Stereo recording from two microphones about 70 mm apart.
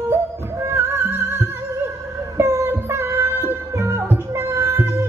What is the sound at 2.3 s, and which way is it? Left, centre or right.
Music, right.